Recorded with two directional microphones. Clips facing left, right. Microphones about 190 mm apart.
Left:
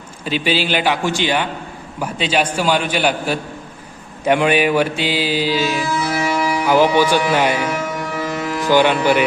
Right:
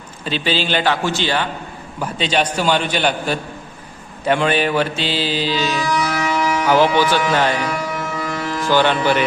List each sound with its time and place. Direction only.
0.3 s mantra: 10° left (ahead or behind)
5.9 s music: 30° left (ahead or behind)
6.4 s speech: 10° left (ahead or behind)
7.3 s music: 10° left (ahead or behind)
8.6 s mantra: 15° left (ahead or behind)